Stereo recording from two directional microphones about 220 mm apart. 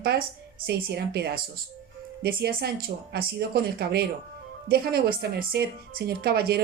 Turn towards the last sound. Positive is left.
turn(degrees=-45)  # may be behind; listen again after turning